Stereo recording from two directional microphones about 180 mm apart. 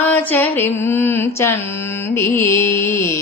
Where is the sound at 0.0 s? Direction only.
10° left (ahead or behind).